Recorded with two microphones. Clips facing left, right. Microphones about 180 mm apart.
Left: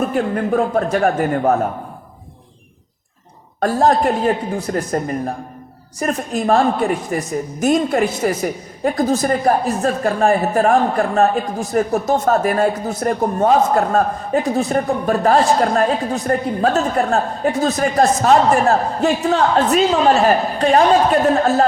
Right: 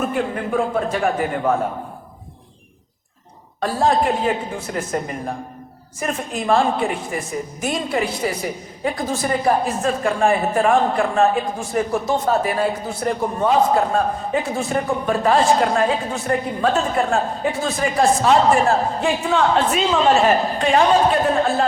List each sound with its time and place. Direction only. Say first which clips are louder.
0.0 s a man's voice: left 4 dB; 40° left (ahead or behind)
3.6 s a woman's voice: left 3 dB; 45° left (ahead or behind)
6.0 s a woman's voice: left 4 dB; 40° left (ahead or behind)